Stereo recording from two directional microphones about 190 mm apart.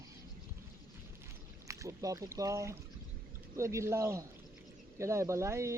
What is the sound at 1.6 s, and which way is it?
Speech, 15° right (ahead or behind).